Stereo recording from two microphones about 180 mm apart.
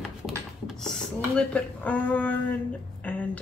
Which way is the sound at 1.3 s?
10° left (ahead or behind).